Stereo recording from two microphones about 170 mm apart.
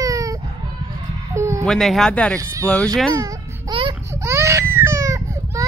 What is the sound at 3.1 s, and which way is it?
Baby cry, 25° right (ahead or behind).